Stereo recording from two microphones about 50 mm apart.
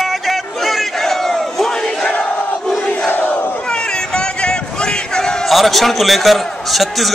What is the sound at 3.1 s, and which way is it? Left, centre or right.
Battle cry, left.